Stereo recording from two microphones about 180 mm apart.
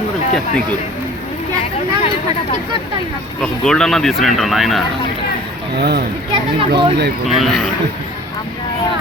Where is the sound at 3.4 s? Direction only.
5° left (ahead or behind).